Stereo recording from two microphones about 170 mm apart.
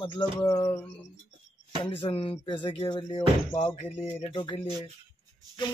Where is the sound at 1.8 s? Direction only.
35° left (ahead or behind).